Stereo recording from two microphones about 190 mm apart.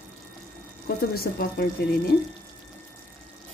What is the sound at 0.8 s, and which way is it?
Speech, 55° left (ahead or behind).